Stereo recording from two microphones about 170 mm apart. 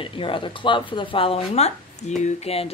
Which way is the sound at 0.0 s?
30° left (ahead or behind).